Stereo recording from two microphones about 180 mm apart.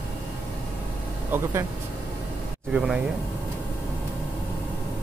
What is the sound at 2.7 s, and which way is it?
Speech, 5° right (ahead or behind).